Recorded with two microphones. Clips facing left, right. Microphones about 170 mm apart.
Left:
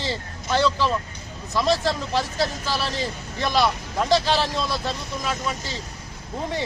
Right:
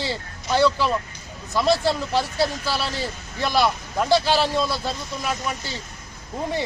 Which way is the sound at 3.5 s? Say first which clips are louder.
Right 1 dB; 10° right (ahead or behind).